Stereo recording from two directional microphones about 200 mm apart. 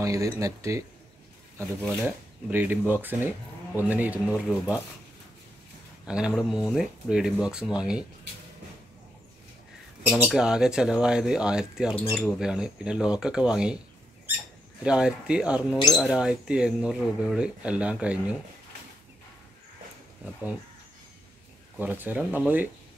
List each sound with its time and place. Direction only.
0.0 s speech: 15° right (ahead or behind)
6.0 s speech: 5° right (ahead or behind)
10.1 s speech: centre (ahead or behind)
14.8 s speech: 5° right (ahead or behind)
21.7 s speech: 10° right (ahead or behind)